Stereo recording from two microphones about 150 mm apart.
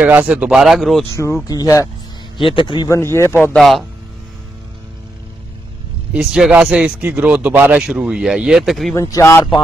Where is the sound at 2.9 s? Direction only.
20° left (ahead or behind).